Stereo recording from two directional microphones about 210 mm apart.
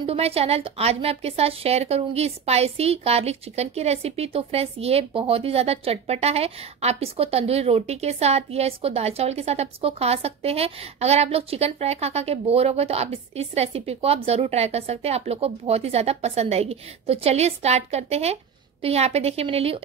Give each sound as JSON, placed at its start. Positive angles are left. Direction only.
{"t": 0.0, "sound": "a woman's voice", "side_deg": -30}